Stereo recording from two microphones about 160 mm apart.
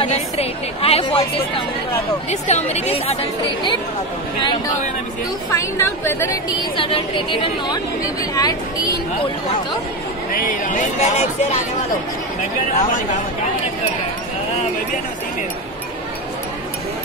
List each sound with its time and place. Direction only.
0.0 s a woman's voice: 40° left (ahead or behind)
5.6 s a woman's voice: 15° left (ahead or behind)
6.8 s a woman's voice: 35° left (ahead or behind)
10.3 s a man's voice: 60° left (ahead or behind)
12.7 s speech: 50° left (ahead or behind)